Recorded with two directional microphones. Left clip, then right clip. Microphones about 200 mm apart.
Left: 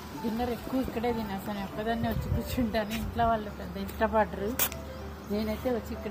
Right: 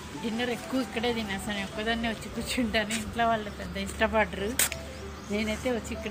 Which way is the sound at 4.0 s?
5° right (ahead or behind).